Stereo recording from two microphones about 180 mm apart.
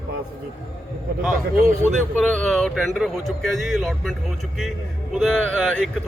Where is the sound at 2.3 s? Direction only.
5° left (ahead or behind).